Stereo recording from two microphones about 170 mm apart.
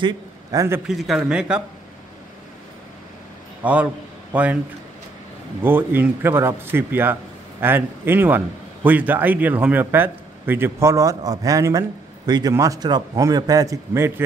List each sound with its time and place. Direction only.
0.0 s a man's voice: 20° right (ahead or behind)
0.8 s a man's voice: centre (ahead or behind)
3.6 s a man's voice: 10° right (ahead or behind)
5.6 s a man's voice: 10° right (ahead or behind)